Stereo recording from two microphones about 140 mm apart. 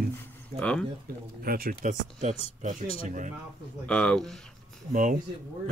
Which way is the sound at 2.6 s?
65° right (ahead or behind).